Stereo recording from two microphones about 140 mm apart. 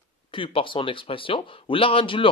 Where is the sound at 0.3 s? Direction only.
40° left (ahead or behind).